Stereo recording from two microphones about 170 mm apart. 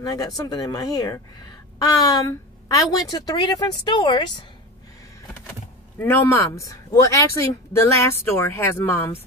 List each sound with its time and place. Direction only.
0.0 s speech: 20° left (ahead or behind)
5.9 s speech: 15° left (ahead or behind)